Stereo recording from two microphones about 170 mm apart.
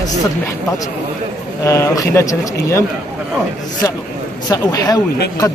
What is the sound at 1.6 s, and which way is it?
Speech, 20° left (ahead or behind).